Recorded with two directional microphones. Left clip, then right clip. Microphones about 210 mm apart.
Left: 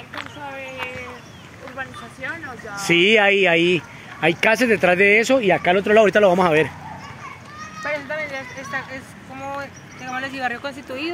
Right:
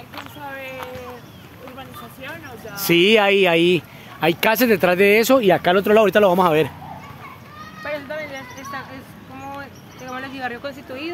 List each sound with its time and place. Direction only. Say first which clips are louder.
2.7 s speech: even; 15° right (ahead or behind)
5.9 s speech: left 2 dB; 10° right (ahead or behind)
7.8 s horse: left 2 dB; 15° left (ahead or behind)
9.4 s a sound: left 4 dB; 55° left (ahead or behind)